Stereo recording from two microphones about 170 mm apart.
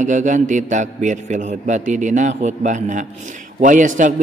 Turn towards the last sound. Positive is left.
turn(degrees=-50)  # may be behind; listen again after turning